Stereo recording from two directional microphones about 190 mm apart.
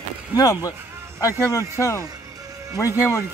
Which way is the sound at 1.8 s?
15° left (ahead or behind).